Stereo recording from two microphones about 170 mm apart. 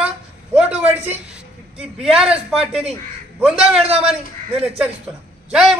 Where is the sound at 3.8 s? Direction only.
35° right (ahead or behind).